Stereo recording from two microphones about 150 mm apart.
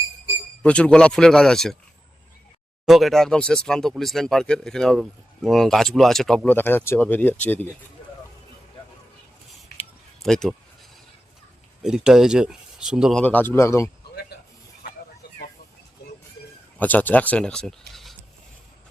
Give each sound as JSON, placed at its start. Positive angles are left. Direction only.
{"t": 0.6, "sound": "speech", "side_deg": 5}
{"t": 2.8, "sound": "a man's voice", "side_deg": 0}
{"t": 10.2, "sound": "speech", "side_deg": 5}
{"t": 11.8, "sound": "speech", "side_deg": -5}
{"t": 13.2, "sound": "a man's voice", "side_deg": 10}
{"t": 16.7, "sound": "speech", "side_deg": 10}